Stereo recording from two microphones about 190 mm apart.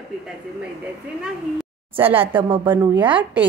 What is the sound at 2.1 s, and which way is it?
Speech, 25° right (ahead or behind).